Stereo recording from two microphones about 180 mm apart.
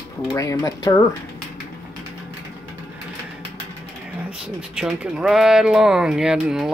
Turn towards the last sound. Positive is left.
turn(degrees=-5)  # may be behind; listen again after turning